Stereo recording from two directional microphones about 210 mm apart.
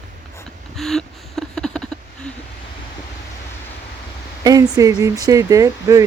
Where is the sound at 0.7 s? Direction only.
Centre (ahead or behind).